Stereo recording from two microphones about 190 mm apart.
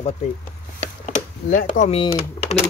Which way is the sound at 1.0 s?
40° left (ahead or behind).